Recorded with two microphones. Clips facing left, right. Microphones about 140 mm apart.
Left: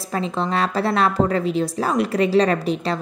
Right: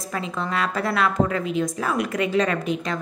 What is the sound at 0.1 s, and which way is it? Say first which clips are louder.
A woman's voice: left 5 dB; 30° left (ahead or behind).